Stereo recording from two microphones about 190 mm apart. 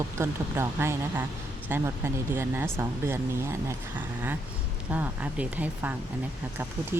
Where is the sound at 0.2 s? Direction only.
15° right (ahead or behind).